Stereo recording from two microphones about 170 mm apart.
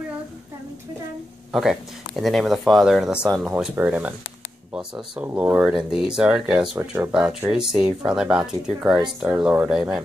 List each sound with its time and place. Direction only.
1.5 s speech: centre (ahead or behind)